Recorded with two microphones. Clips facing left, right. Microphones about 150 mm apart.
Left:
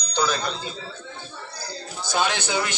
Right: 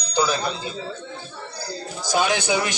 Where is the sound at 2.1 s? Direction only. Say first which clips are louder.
Right 4 dB; 10° right (ahead or behind).